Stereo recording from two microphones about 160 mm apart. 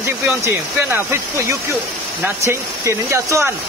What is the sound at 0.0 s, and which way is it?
Speech, 15° right (ahead or behind).